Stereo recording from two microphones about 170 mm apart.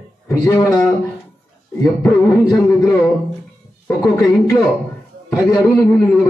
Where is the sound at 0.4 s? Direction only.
20° left (ahead or behind).